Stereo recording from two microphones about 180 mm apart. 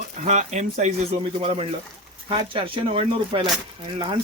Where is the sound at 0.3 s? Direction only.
40° right (ahead or behind).